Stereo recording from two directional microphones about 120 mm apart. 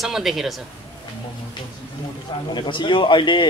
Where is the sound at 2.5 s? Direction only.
40° left (ahead or behind).